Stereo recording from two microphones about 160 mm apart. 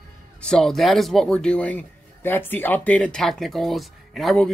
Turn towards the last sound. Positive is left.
turn(degrees=0)  # may be behind; listen again after turning